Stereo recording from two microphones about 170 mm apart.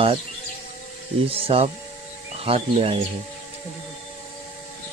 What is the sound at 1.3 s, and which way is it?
Speech, 35° right (ahead or behind).